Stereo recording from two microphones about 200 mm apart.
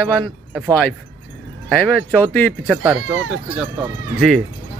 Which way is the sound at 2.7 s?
10° right (ahead or behind).